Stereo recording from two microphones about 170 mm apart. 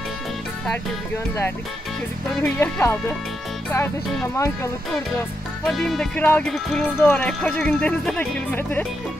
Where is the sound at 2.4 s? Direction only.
15° left (ahead or behind).